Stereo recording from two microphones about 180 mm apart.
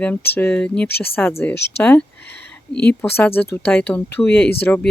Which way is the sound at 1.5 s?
70° left (ahead or behind).